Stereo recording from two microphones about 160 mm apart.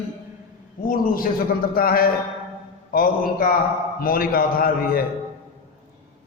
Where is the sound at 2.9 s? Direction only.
65° left (ahead or behind).